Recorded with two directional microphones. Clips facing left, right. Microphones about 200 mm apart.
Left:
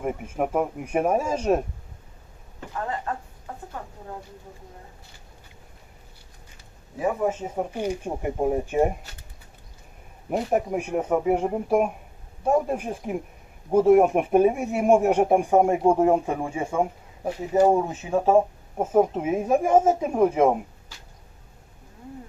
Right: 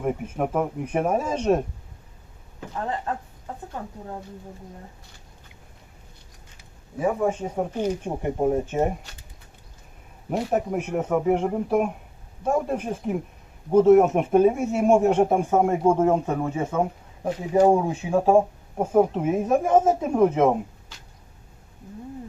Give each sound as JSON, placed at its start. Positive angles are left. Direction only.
{"t": 0.0, "sound": "speech", "side_deg": 5}
{"t": 7.0, "sound": "speech", "side_deg": 5}
{"t": 10.5, "sound": "speech", "side_deg": 10}